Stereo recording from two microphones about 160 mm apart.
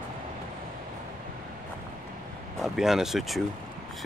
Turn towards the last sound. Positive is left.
turn(degrees=0)  # may be behind; listen again after turning